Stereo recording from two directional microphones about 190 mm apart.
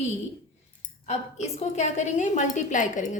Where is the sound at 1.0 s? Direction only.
35° left (ahead or behind).